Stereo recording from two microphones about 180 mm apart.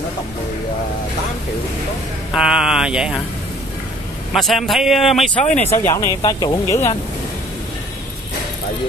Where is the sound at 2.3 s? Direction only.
5° right (ahead or behind).